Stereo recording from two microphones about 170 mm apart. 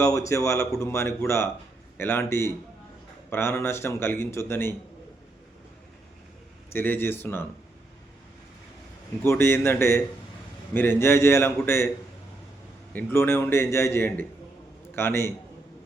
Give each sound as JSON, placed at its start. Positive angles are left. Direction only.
{"t": 0.0, "sound": "speech", "side_deg": 15}
{"t": 6.7, "sound": "speech", "side_deg": 10}
{"t": 9.2, "sound": "speech", "side_deg": 15}
{"t": 12.9, "sound": "speech", "side_deg": 10}